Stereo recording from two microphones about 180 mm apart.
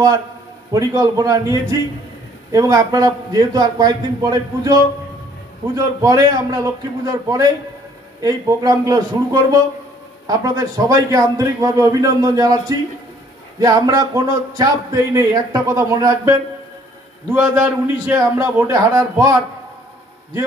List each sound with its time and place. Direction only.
0.7 s speech: 20° right (ahead or behind)
6.0 s a man's voice: 20° right (ahead or behind)